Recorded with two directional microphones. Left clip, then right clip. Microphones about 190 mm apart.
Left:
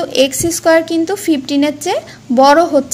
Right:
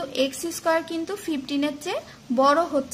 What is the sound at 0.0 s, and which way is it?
A woman's voice, 20° left (ahead or behind).